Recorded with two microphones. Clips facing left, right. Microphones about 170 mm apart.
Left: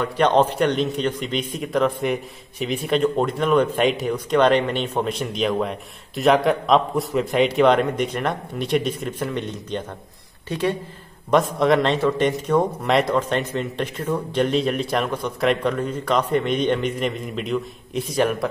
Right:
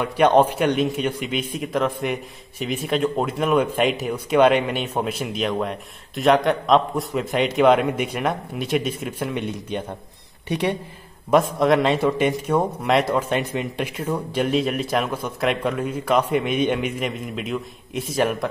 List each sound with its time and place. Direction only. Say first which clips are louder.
0.0 s a man's voice: right 1 dB; 10° right (ahead or behind)
11.2 s a man's voice: even; centre (ahead or behind)